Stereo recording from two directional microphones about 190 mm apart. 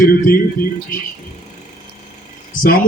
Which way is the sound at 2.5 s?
45° left (ahead or behind).